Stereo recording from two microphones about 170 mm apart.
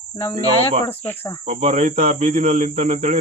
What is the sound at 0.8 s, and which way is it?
Speech, 10° left (ahead or behind).